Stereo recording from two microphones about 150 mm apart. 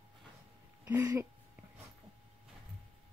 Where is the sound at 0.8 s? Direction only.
15° right (ahead or behind).